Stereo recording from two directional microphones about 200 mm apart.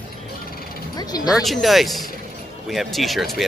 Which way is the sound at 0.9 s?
20° left (ahead or behind).